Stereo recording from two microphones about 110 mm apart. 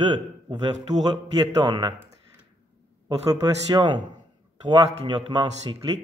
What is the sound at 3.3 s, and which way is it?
Speech, 35° right (ahead or behind).